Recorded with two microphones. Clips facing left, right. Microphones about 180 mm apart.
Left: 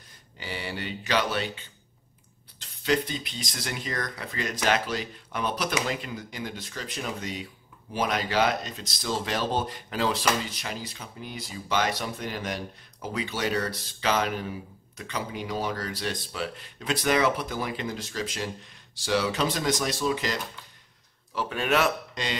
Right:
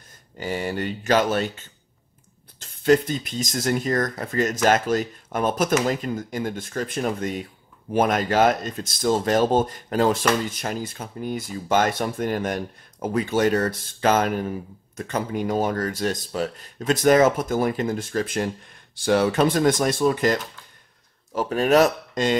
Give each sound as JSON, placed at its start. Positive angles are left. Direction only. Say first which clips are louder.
{"t": 0.4, "sound": "speech", "louder": "right 8 dB", "side_deg": -45}